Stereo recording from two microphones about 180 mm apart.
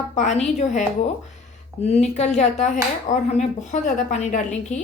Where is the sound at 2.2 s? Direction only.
40° left (ahead or behind).